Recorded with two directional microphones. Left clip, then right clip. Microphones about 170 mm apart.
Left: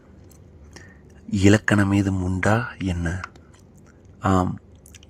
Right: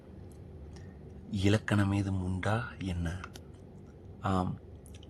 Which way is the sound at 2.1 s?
25° left (ahead or behind).